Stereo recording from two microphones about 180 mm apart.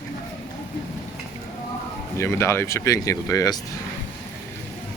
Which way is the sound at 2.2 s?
15° left (ahead or behind).